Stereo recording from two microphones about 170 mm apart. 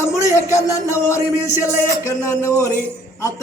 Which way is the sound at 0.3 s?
15° left (ahead or behind).